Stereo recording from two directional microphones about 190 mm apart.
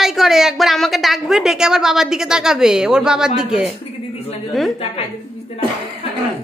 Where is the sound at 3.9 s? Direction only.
30° left (ahead or behind).